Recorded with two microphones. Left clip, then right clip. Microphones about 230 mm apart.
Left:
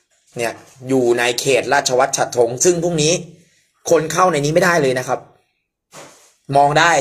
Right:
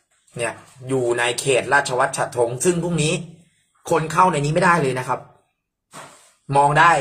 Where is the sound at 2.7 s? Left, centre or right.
Left.